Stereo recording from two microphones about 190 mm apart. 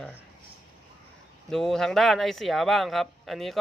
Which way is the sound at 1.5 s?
Centre (ahead or behind).